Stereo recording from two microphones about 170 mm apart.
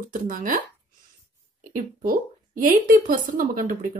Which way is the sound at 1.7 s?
55° right (ahead or behind).